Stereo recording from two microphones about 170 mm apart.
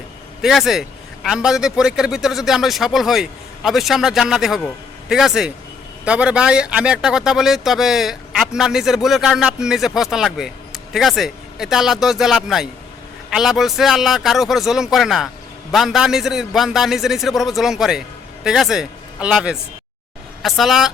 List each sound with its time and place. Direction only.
0.4 s speech: centre (ahead or behind)